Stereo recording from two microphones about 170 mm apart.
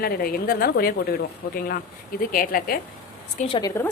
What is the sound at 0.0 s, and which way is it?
Speech, 60° left (ahead or behind).